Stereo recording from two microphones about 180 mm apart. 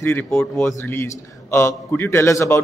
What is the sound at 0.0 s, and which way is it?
A man's voice, 15° left (ahead or behind).